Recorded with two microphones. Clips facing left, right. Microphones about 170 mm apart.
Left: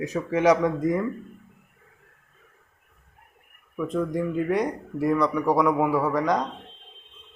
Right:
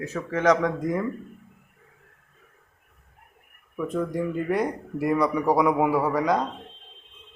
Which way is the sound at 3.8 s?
5° right (ahead or behind).